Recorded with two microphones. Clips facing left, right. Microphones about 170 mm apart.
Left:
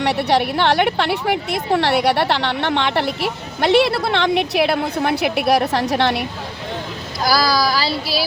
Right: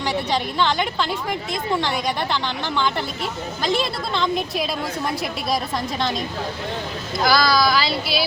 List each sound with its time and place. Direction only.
0.0 s a woman's voice: 70° left (ahead or behind)
7.4 s speech: 35° left (ahead or behind)